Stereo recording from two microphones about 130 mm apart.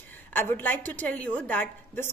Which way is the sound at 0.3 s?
15° left (ahead or behind).